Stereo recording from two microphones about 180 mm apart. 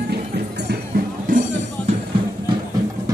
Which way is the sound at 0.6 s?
55° right (ahead or behind).